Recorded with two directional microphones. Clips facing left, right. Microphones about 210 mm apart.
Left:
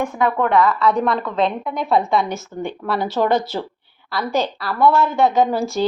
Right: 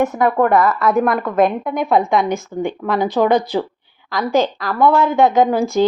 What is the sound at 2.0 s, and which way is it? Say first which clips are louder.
Speech: right 2 dB; centre (ahead or behind).